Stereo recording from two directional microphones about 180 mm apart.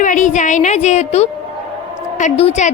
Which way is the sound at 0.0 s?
45° left (ahead or behind).